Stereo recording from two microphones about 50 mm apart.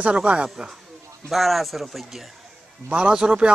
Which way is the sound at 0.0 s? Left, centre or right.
Right.